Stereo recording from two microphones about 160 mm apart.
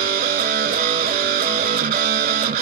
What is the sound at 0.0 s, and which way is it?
Music, 70° right (ahead or behind).